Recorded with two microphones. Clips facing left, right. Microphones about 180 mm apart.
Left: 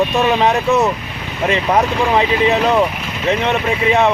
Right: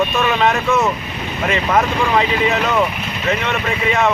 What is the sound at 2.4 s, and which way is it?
Speech, 35° left (ahead or behind).